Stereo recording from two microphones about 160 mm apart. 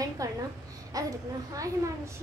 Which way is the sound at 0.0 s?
20° right (ahead or behind).